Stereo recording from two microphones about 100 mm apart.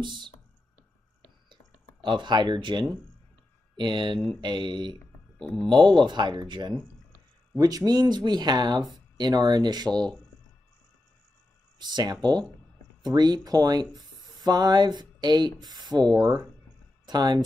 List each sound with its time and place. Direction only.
0.0 s speech: 50° right (ahead or behind)
2.0 s speech: 50° right (ahead or behind)
5.4 s speech: 5° left (ahead or behind)
5.7 s speech: 50° right (ahead or behind)
7.5 s speech: 35° right (ahead or behind)
9.9 s speech: 10° left (ahead or behind)
11.8 s speech: 45° right (ahead or behind)